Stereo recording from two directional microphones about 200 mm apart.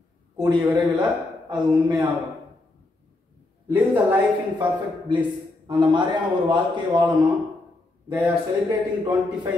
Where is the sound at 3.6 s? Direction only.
10° right (ahead or behind).